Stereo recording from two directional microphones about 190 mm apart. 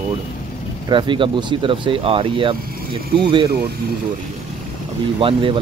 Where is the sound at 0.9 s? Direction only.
25° right (ahead or behind).